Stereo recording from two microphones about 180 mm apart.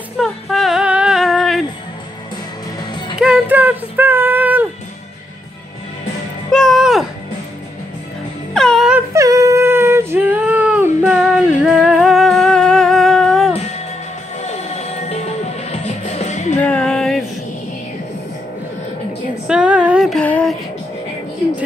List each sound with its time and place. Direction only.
0.2 s female singing: centre (ahead or behind)
3.2 s a sound: 5° right (ahead or behind)
6.5 s music: centre (ahead or behind)
8.5 s music: centre (ahead or behind)
9.1 s child singing: 15° right (ahead or behind); by 13.5 s centre (ahead or behind)
14.4 s music: 35° left (ahead or behind)
16.5 s music: 5° left (ahead or behind)
19.4 s female singing: 5° right (ahead or behind)